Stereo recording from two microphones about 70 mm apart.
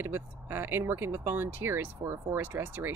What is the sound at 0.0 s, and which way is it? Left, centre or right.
Speech, right.